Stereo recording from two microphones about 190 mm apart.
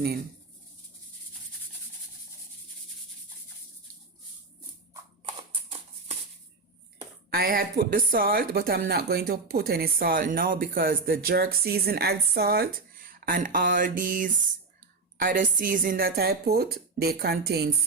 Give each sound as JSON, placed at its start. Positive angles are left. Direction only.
{"t": 7.3, "sound": "speech", "side_deg": -50}